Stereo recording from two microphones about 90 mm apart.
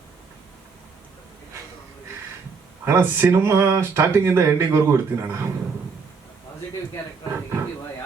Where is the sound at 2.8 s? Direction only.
30° right (ahead or behind).